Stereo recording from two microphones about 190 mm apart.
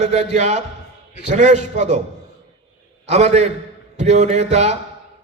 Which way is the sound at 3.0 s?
35° right (ahead or behind).